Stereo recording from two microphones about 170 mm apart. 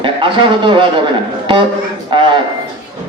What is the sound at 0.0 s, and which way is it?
Speech, 30° right (ahead or behind).